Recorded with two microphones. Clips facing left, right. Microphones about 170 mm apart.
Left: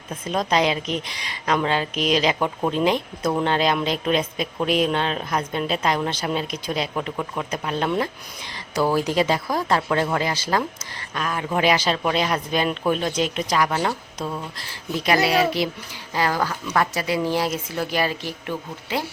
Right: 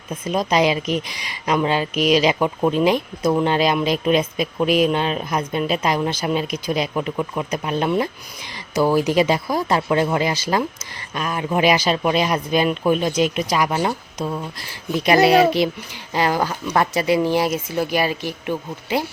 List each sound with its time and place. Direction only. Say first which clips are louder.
0.3 s speech: right 3 dB; 10° right (ahead or behind)